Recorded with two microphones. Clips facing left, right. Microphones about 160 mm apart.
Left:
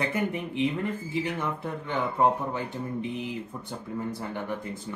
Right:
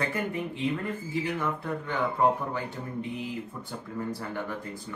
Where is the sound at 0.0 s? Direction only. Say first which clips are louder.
Left 2 dB; 20° left (ahead or behind).